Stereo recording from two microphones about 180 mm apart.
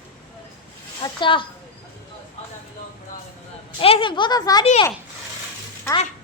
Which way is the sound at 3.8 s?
30° left (ahead or behind).